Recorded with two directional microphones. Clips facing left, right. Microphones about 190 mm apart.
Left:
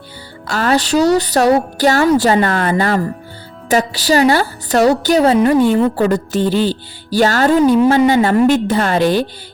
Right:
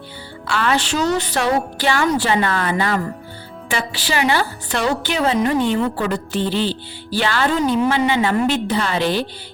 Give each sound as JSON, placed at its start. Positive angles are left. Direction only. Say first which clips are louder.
{"t": 0.4, "sound": "a woman's voice", "louder": "left 4 dB", "side_deg": 40}